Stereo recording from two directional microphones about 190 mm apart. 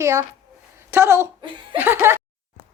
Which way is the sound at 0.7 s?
15° right (ahead or behind).